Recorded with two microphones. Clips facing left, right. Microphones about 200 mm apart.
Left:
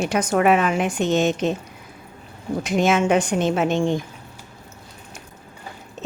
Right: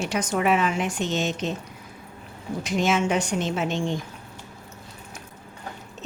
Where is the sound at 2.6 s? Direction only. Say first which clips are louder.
Left 4 dB; 55° left (ahead or behind).